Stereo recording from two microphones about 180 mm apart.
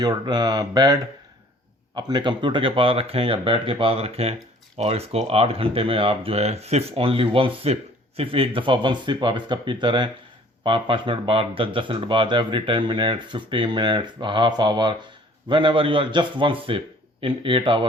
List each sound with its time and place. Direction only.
0.0 s speech: 25° right (ahead or behind)
2.0 s speech: 25° right (ahead or behind)